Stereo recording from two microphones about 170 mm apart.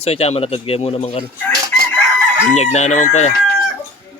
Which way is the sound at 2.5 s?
40° left (ahead or behind).